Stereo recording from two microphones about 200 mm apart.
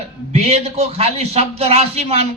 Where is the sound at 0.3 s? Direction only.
30° right (ahead or behind).